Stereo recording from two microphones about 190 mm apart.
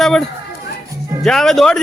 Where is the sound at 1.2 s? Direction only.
Centre (ahead or behind).